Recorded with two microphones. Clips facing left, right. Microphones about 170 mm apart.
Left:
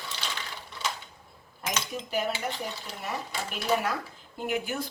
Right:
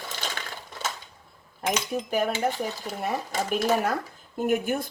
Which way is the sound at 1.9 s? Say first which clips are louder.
Right 3 dB; 50° right (ahead or behind).